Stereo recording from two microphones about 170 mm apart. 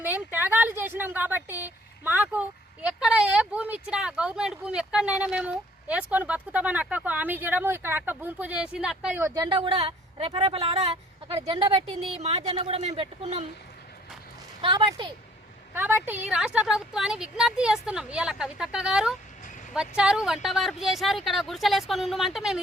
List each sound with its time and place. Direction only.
0.0 s speech: 10° right (ahead or behind)
9.2 s a woman's voice: 20° right (ahead or behind)
14.6 s a woman's voice: 30° right (ahead or behind)
15.7 s speech: 10° right (ahead or behind)